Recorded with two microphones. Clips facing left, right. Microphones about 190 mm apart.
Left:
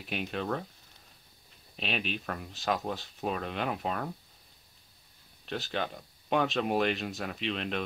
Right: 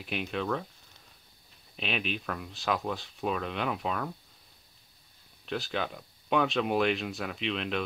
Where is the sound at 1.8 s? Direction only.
35° left (ahead or behind).